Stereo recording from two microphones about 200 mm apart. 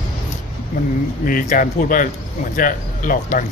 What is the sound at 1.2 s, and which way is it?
Speech, 45° left (ahead or behind).